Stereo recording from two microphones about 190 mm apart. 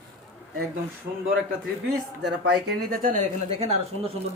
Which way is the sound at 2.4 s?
60° right (ahead or behind).